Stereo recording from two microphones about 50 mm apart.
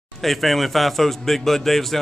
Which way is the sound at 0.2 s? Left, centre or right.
Centre.